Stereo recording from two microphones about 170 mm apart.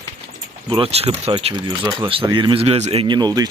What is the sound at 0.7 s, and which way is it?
Speech, 35° right (ahead or behind).